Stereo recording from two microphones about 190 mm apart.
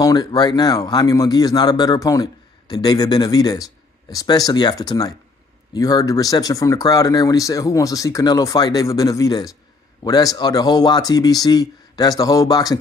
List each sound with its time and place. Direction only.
0.0 s speech: 20° left (ahead or behind)